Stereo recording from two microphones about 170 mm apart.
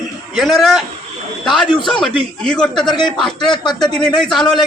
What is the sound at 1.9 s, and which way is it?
Speech, 5° left (ahead or behind).